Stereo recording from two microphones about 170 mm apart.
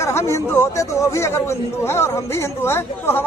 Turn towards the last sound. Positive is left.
turn(degrees=15)  # may be behind; listen again after turning